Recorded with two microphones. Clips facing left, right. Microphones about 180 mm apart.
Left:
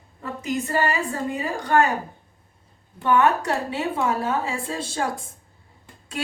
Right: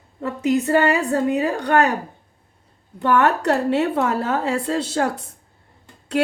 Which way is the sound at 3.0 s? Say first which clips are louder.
Right 2 dB; 70° right (ahead or behind).